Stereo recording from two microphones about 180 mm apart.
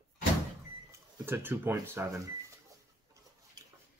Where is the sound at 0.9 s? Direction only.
10° right (ahead or behind).